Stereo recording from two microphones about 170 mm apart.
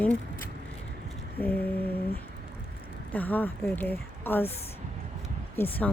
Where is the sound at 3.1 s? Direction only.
10° left (ahead or behind).